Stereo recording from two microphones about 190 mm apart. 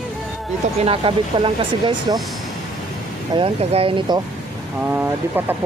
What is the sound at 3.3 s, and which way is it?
Speech, 30° right (ahead or behind).